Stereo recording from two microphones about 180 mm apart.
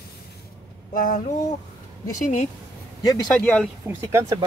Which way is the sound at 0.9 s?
50° left (ahead or behind).